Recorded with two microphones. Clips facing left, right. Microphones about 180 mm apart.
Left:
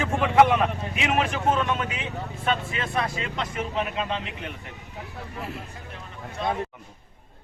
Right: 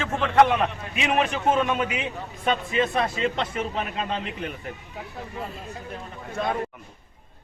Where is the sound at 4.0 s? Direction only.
40° right (ahead or behind).